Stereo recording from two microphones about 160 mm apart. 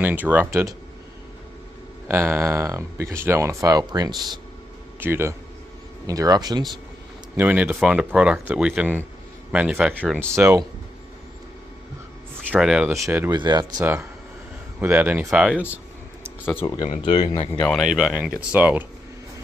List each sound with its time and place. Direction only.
0.0 s speech: 10° right (ahead or behind)
2.0 s speech: 15° right (ahead or behind)
5.0 s speech: 15° right (ahead or behind)
7.3 s speech: 10° right (ahead or behind)
12.4 s speech: 5° right (ahead or behind)
12.9 s speech: 15° right (ahead or behind)
13.3 s speech: 25° right (ahead or behind)
14.8 s speech: 10° right (ahead or behind)
16.6 s speech: 35° left (ahead or behind)
17.6 s speech: 5° left (ahead or behind)
17.8 s speech: 5° right (ahead or behind)